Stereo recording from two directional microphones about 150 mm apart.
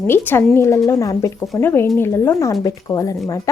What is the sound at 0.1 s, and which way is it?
Speech, 15° left (ahead or behind).